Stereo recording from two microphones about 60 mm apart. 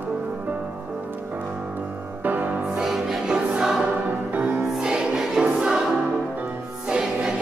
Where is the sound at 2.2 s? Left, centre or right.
Right.